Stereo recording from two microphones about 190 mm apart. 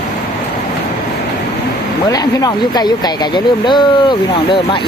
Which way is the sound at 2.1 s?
20° left (ahead or behind).